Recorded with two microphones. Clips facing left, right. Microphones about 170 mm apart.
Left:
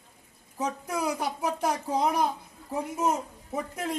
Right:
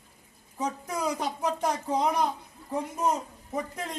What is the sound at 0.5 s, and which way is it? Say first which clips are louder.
Speech: left 1 dB; 10° left (ahead or behind).